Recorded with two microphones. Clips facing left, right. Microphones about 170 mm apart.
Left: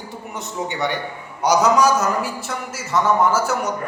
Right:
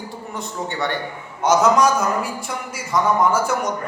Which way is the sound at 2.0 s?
5° left (ahead or behind).